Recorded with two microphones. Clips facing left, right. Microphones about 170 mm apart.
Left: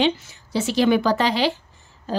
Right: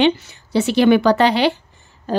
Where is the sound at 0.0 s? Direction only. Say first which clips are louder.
Right 5 dB; 65° right (ahead or behind).